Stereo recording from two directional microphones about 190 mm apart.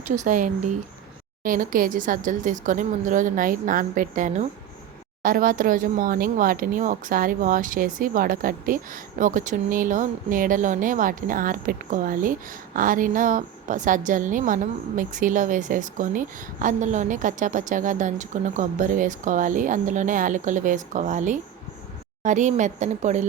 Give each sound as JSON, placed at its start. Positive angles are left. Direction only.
{"t": 0.2, "sound": "a woman's voice", "side_deg": -40}